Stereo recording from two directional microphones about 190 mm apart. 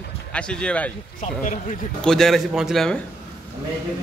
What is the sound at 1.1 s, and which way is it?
Speech, 40° left (ahead or behind).